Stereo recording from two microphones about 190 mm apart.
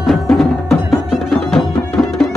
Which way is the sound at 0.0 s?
Centre (ahead or behind).